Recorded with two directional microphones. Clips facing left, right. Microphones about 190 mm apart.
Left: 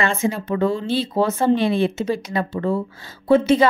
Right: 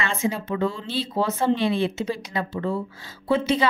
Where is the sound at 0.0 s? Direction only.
50° left (ahead or behind).